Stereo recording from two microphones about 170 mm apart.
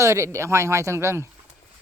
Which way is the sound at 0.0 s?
15° right (ahead or behind).